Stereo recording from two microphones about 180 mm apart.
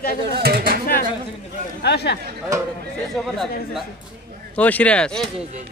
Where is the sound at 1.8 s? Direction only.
65° left (ahead or behind).